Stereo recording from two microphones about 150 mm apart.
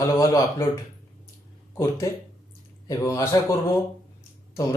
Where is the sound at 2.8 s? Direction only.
20° left (ahead or behind).